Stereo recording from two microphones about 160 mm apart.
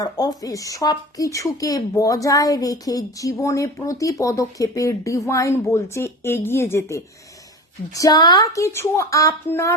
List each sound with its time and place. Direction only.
0.0 s speech: 20° left (ahead or behind)